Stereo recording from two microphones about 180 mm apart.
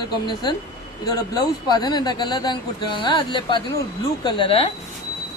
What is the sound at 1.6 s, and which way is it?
A woman's voice, 25° left (ahead or behind).